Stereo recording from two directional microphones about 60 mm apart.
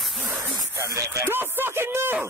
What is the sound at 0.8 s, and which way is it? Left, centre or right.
Speech, right.